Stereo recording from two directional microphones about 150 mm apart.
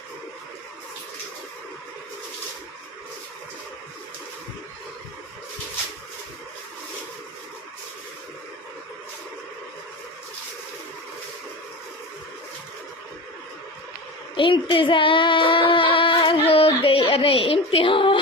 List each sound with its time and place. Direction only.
14.3 s child singing: 35° left (ahead or behind)